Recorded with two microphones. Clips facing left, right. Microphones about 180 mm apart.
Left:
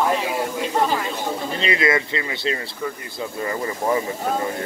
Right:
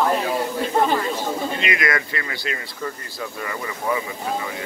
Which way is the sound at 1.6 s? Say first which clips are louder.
Left 3 dB; 30° left (ahead or behind).